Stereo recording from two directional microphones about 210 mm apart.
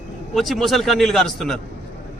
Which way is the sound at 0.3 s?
Centre (ahead or behind).